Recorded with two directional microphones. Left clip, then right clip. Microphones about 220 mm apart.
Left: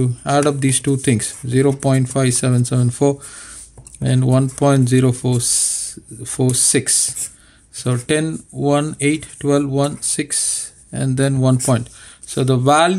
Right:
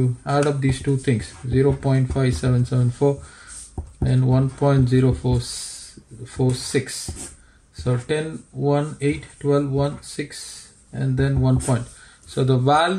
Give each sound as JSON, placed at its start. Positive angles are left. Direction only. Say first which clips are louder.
{"t": 0.0, "sound": "speech", "louder": "left 5 dB", "side_deg": 40}